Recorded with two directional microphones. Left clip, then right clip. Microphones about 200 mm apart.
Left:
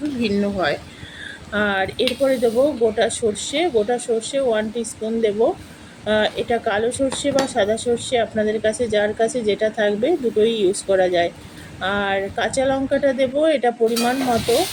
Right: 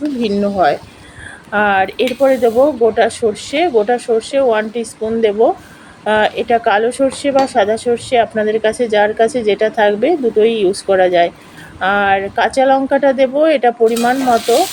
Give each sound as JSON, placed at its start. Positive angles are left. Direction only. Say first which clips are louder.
{"t": 0.2, "sound": "speech", "louder": "right 8 dB", "side_deg": -20}